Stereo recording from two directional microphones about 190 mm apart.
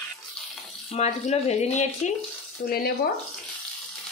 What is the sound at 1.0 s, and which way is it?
Speech, 35° left (ahead or behind).